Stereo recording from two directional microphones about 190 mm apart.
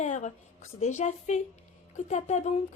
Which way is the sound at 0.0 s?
40° left (ahead or behind).